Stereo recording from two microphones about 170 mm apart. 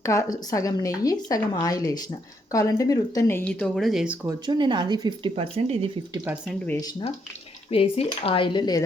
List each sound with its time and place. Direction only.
0.0 s a woman's voice: 20° left (ahead or behind); by 4.2 s 5° right (ahead or behind)
4.3 s speech: 25° right (ahead or behind)
5.3 s speech: 40° right (ahead or behind)
7.7 s speech: 35° left (ahead or behind)